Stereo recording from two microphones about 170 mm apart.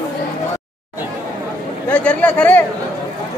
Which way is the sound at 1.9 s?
5° left (ahead or behind).